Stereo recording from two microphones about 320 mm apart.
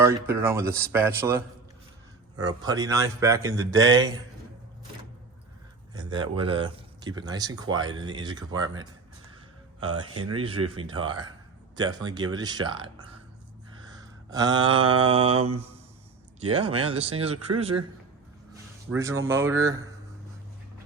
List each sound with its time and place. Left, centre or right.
0.0 s speech: centre
5.9 s speech: centre
10.3 s speech: centre
13.8 s a sound: centre
15.3 s mantra: right
16.4 s speech: centre